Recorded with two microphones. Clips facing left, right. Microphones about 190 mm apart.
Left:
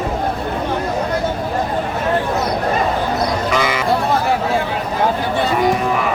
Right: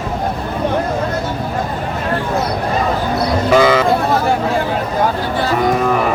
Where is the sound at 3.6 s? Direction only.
30° right (ahead or behind).